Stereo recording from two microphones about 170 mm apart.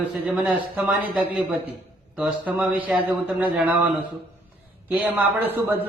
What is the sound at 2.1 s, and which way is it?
A man's voice, 5° right (ahead or behind).